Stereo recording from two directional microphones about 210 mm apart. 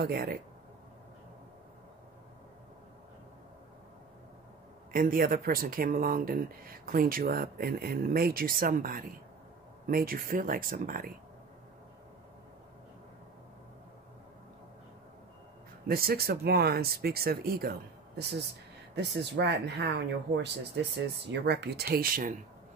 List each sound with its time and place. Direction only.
0.0 s speech: 45° right (ahead or behind)
4.9 s speech: 45° right (ahead or behind)
15.9 s speech: 45° right (ahead or behind)